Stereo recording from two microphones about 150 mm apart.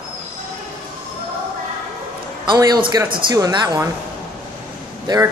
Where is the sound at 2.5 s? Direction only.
30° right (ahead or behind).